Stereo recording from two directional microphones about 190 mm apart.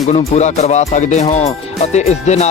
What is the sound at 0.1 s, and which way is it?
Speech, 35° left (ahead or behind).